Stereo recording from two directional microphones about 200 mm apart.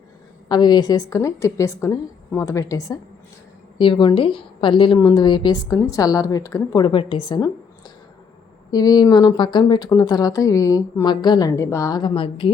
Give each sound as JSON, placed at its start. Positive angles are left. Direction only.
{"t": 0.4, "sound": "a woman's voice", "side_deg": 20}
{"t": 8.7, "sound": "speech", "side_deg": 20}